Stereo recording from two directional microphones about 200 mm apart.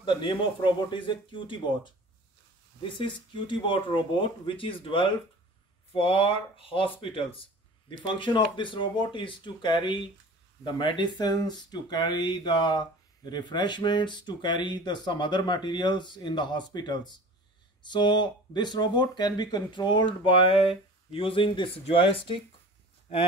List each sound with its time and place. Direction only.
0.0 s speech: 25° left (ahead or behind)
3.0 s speech: 25° left (ahead or behind)